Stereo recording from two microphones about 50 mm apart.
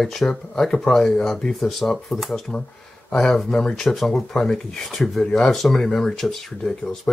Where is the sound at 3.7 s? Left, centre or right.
Centre.